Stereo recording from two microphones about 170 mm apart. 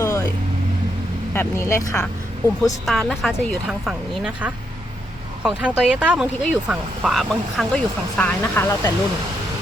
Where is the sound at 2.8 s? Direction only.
Centre (ahead or behind).